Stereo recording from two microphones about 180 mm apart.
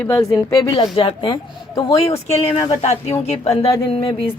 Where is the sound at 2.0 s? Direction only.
35° left (ahead or behind).